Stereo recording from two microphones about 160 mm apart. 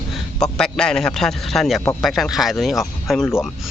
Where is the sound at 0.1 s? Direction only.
5° left (ahead or behind).